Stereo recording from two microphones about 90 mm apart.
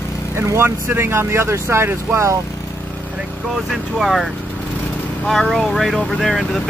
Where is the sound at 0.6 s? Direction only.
25° right (ahead or behind).